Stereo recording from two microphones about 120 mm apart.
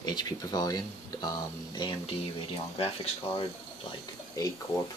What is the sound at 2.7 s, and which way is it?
Speech, 50° left (ahead or behind).